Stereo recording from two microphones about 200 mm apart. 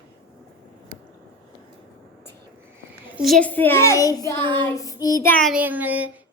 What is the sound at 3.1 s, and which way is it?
A child's voice, centre (ahead or behind).